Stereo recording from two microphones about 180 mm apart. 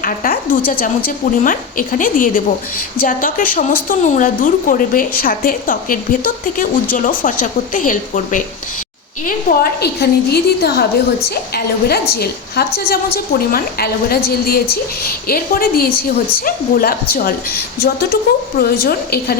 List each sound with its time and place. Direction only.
0.0 s a woman's voice: 50° left (ahead or behind)
9.2 s a woman's voice: 60° left (ahead or behind)